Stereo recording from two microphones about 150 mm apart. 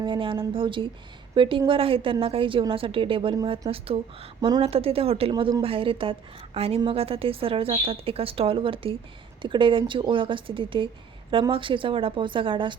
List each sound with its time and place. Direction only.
0.0 s a woman's voice: 35° right (ahead or behind)
4.4 s speech: 25° right (ahead or behind)
4.6 s a woman's voice: 40° right (ahead or behind)